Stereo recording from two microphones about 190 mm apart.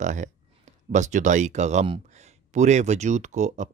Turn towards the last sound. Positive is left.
turn(degrees=-40)  # may be behind; listen again after turning